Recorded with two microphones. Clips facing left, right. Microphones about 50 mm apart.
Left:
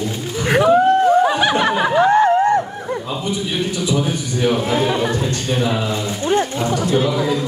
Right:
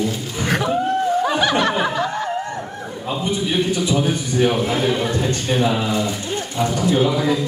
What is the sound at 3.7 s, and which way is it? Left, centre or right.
Speech, right.